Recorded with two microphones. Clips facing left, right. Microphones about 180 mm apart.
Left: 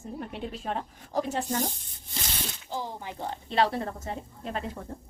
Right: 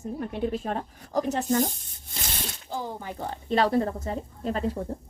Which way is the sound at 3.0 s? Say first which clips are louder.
Right 1 dB; 45° right (ahead or behind).